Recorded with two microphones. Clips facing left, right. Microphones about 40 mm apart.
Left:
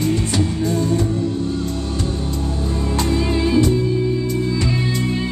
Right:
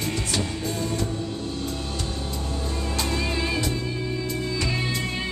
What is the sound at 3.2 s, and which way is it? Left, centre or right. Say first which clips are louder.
Music: left 9 dB; centre.